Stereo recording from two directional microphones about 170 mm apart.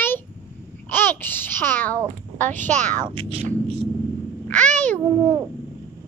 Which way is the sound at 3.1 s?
35° right (ahead or behind).